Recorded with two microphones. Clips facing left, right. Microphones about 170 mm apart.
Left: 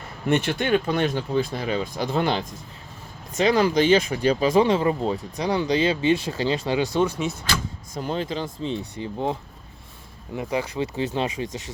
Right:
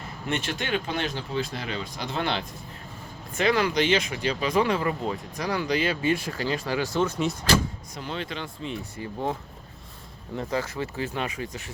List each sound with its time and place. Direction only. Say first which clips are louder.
0.3 s speech: left 7 dB; 55° left (ahead or behind); by 4.6 s 35° left (ahead or behind)
4.6 s speech: left 5 dB; 25° left (ahead or behind)
7.9 s speech: left 7 dB; 40° left (ahead or behind)
9.0 s speech: even; 20° left (ahead or behind)